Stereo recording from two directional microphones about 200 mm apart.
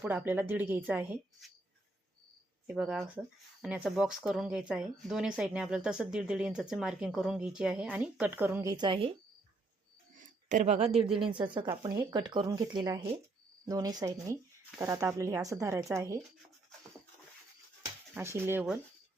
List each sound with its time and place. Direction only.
0.0 s speech: 10° right (ahead or behind)
2.7 s speech: centre (ahead or behind)
8.7 s speech: 25° right (ahead or behind)
10.2 s a sound: 40° right (ahead or behind)
11.3 s speech: 25° right (ahead or behind)
18.1 s speech: 10° right (ahead or behind)